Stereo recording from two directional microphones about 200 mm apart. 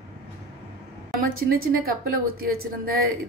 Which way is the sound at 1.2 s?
45° right (ahead or behind).